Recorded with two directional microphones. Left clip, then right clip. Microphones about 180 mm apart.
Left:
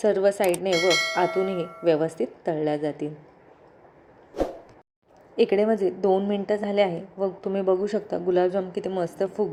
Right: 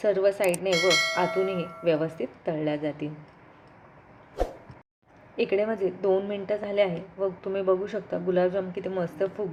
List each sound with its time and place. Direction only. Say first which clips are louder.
0.0 s a woman's voice: left 2 dB; 35° left (ahead or behind)
0.7 s speech: left 1 dB; centre (ahead or behind)
1.8 s a woman's voice: left 4 dB; 35° left (ahead or behind)
4.4 s a sound: left 3 dB; centre (ahead or behind)
5.4 s a woman's voice: left 4 dB; 35° left (ahead or behind)